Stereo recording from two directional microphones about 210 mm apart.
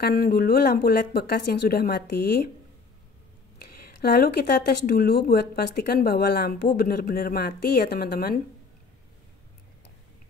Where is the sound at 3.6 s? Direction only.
45° left (ahead or behind).